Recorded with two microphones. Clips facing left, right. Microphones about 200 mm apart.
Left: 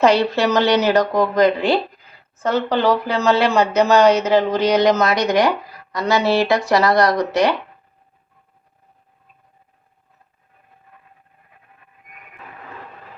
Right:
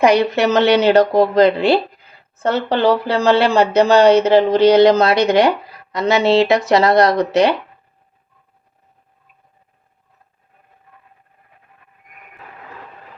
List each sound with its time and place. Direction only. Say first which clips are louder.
0.0 s speech: right 2 dB; 15° right (ahead or behind)